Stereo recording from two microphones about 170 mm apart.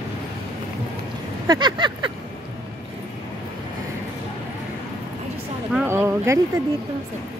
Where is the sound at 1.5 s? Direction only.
25° right (ahead or behind).